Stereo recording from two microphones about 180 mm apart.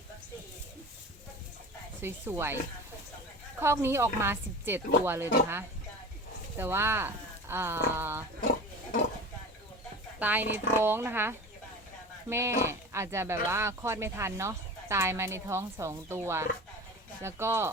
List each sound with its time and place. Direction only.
2.0 s speech: 15° right (ahead or behind)
3.6 s speech: 15° right (ahead or behind)
10.2 s speech: 10° right (ahead or behind)